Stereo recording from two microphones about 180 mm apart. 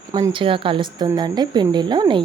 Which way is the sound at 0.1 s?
25° right (ahead or behind).